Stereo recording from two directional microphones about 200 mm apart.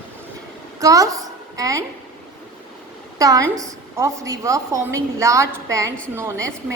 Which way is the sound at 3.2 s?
20° right (ahead or behind).